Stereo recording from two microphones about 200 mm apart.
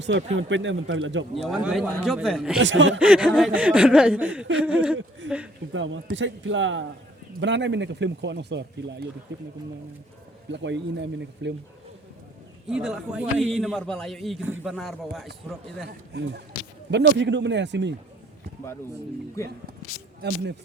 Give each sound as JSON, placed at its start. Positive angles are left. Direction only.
{"t": 0.3, "sound": "a man's voice", "side_deg": -70}
{"t": 1.5, "sound": "a man's voice", "side_deg": -5}
{"t": 2.6, "sound": "a man's voice", "side_deg": -65}
{"t": 3.1, "sound": "chuckle", "side_deg": -5}
{"t": 5.2, "sound": "a man's voice", "side_deg": -65}
{"t": 10.5, "sound": "speech", "side_deg": -60}
{"t": 12.6, "sound": "a man's voice", "side_deg": -5}
{"t": 15.9, "sound": "speech", "side_deg": -55}
{"t": 20.2, "sound": "speech", "side_deg": -55}